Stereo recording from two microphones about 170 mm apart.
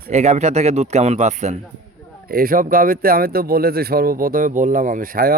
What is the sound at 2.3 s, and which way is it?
Speech, 60° right (ahead or behind).